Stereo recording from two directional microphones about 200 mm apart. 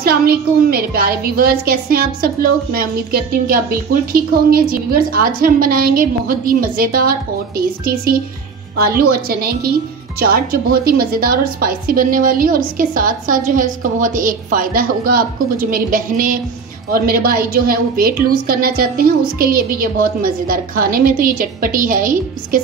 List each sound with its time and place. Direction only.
0.0 s a woman's voice: 50° right (ahead or behind)